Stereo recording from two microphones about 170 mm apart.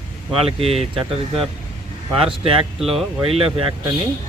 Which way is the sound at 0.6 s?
35° right (ahead or behind).